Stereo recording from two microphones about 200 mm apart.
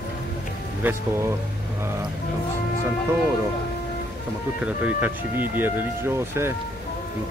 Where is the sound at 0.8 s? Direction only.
10° right (ahead or behind).